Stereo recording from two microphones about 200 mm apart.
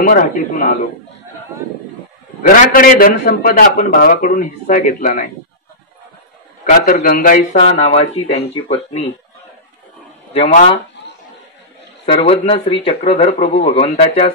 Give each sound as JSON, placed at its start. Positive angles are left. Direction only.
{"t": 0.0, "sound": "a man's voice", "side_deg": 45}
{"t": 2.4, "sound": "a man's voice", "side_deg": 45}
{"t": 6.6, "sound": "a man's voice", "side_deg": 45}
{"t": 7.5, "sound": "speech", "side_deg": 35}
{"t": 10.3, "sound": "speech", "side_deg": 30}
{"t": 12.1, "sound": "speech", "side_deg": 30}